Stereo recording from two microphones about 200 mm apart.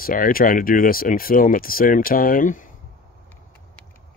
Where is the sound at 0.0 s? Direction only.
45° left (ahead or behind).